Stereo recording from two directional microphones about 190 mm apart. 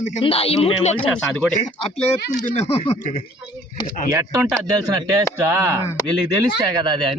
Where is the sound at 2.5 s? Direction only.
35° left (ahead or behind).